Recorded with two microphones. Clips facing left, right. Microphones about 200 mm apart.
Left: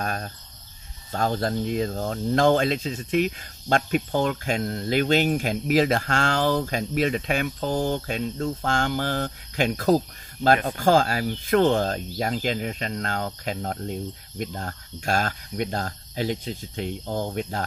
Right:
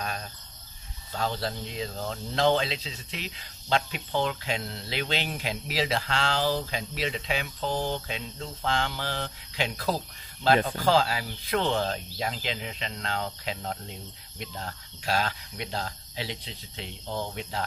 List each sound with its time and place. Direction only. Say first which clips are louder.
0.0 s cricket: left 5 dB; 50° left (ahead or behind)
1.1 s speech: left 6 dB; 50° left (ahead or behind)